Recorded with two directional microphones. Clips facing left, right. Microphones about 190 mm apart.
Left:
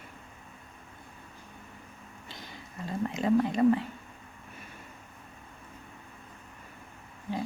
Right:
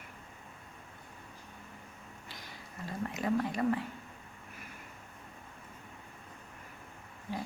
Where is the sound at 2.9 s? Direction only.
25° left (ahead or behind).